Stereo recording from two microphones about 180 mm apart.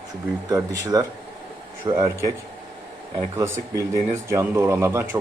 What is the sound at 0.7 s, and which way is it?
Speech, 20° right (ahead or behind).